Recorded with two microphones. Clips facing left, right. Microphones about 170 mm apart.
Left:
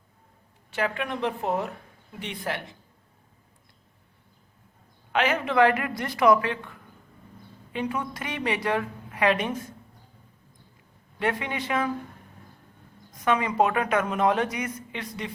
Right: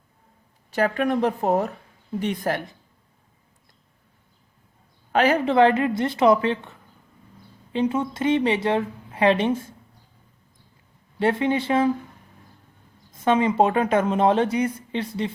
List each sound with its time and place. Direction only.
0.7 s a woman's voice: 40° right (ahead or behind)
5.1 s a woman's voice: 35° right (ahead or behind)
11.2 s a woman's voice: 30° right (ahead or behind)
13.2 s a woman's voice: 25° right (ahead or behind)